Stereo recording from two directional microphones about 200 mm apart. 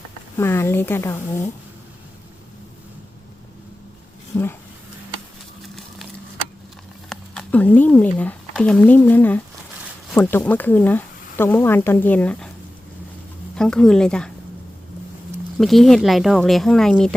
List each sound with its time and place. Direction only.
0.3 s speech: 10° left (ahead or behind)
4.3 s speech: 10° left (ahead or behind)
7.1 s speech: 5° left (ahead or behind)
13.6 s speech: 5° left (ahead or behind)
15.5 s speech: centre (ahead or behind)